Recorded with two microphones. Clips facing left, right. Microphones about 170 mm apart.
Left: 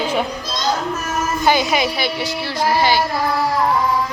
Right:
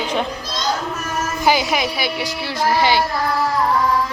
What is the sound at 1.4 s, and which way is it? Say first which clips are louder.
A woman's voice: left 1 dB; 5° right (ahead or behind).